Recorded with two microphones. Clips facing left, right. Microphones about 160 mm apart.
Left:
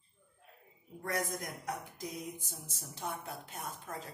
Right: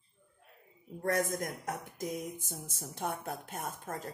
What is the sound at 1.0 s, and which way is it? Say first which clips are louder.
A woman's voice: right 5 dB; 50° right (ahead or behind).